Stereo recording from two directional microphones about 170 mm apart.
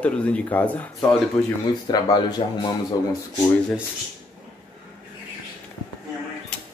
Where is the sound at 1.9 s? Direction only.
25° left (ahead or behind).